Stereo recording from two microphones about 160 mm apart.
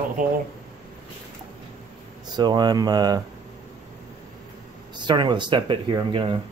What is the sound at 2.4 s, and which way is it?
Speech, 25° right (ahead or behind).